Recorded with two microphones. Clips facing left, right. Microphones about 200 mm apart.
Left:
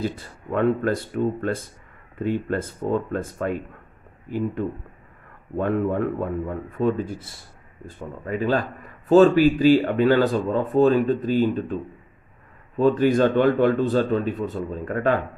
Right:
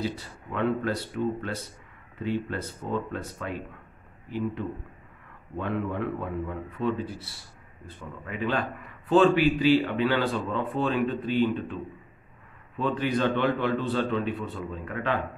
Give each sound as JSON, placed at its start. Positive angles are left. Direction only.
{"t": 0.0, "sound": "a man's voice", "side_deg": 50}
{"t": 4.6, "sound": "a man's voice", "side_deg": 45}